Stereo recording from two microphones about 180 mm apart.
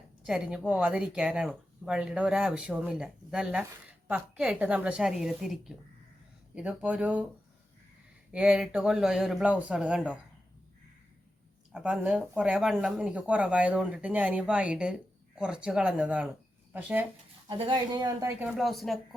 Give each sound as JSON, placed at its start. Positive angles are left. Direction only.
{"t": 0.2, "sound": "speech", "side_deg": -5}
{"t": 8.3, "sound": "speech", "side_deg": -5}
{"t": 11.7, "sound": "speech", "side_deg": -5}
{"t": 17.5, "sound": "speech", "side_deg": -25}
{"t": 18.4, "sound": "speech", "side_deg": 0}